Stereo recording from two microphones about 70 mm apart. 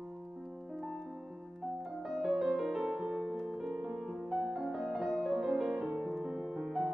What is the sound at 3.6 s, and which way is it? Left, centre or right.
Music, centre.